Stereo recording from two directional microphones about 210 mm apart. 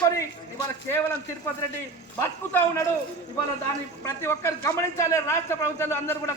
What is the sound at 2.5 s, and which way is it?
Speech, 10° left (ahead or behind).